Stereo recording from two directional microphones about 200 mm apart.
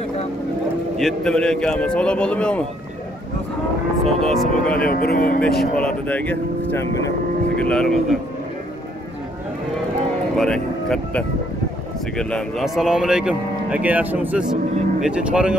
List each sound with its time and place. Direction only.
0.9 s speech: centre (ahead or behind)
4.2 s speech: centre (ahead or behind)
4.7 s speech: 45° left (ahead or behind)
5.8 s speech: 5° left (ahead or behind)
10.3 s speech: 5° left (ahead or behind)